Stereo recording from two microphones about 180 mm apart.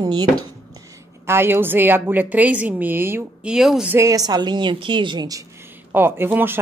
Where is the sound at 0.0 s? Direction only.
25° right (ahead or behind).